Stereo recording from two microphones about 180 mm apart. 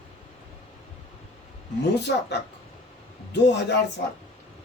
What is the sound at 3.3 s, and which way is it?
Speech, 70° left (ahead or behind).